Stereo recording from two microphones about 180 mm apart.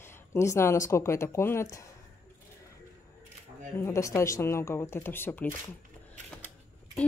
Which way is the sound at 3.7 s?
15° left (ahead or behind).